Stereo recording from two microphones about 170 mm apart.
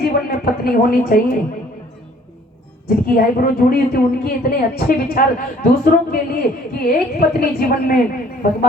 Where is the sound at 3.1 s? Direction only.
60° left (ahead or behind).